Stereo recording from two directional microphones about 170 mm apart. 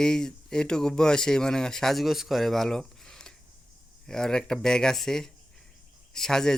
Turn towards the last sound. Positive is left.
turn(degrees=5)  # may be behind; listen again after turning